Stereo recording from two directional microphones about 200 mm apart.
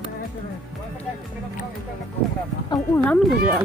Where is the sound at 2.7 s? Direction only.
20° left (ahead or behind).